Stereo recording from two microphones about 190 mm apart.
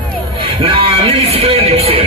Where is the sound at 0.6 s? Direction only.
30° right (ahead or behind).